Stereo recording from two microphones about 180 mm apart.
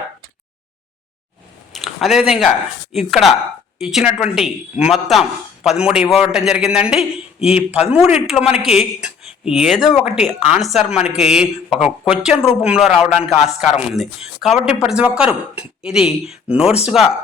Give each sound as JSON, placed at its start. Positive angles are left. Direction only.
{"t": 1.7, "sound": "a sound", "side_deg": 0}
{"t": 2.9, "sound": "speech", "side_deg": 0}
{"t": 7.7, "sound": "a man's voice", "side_deg": 35}
{"t": 7.9, "sound": "speech", "side_deg": -5}